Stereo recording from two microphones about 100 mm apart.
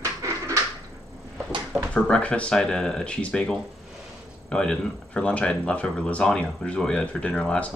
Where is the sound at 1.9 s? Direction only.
10° left (ahead or behind).